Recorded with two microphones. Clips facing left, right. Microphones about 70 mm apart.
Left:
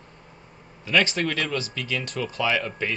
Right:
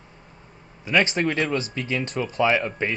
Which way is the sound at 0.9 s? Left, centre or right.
Right.